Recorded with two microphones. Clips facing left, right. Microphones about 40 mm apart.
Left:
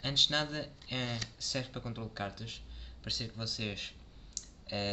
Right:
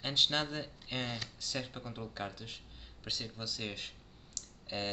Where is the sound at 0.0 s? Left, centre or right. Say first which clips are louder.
Left 1 dB; centre.